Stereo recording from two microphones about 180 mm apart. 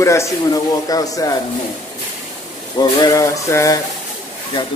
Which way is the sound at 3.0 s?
20° left (ahead or behind).